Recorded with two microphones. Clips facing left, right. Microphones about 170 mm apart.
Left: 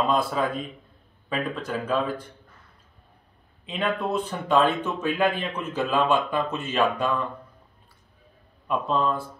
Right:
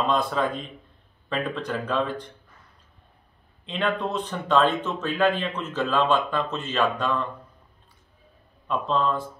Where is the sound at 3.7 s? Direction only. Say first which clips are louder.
Even; 10° left (ahead or behind).